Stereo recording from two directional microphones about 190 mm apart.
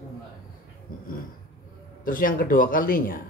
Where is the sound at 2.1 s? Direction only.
45° left (ahead or behind).